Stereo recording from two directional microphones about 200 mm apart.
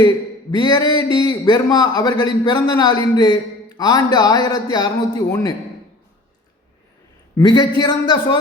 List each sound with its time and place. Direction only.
0.5 s a man's voice: 20° left (ahead or behind)
7.3 s a man's voice: 20° left (ahead or behind)